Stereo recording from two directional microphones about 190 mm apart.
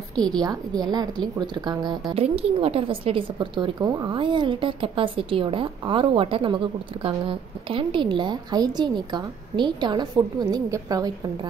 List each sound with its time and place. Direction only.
0.4 s a woman's voice: 20° right (ahead or behind)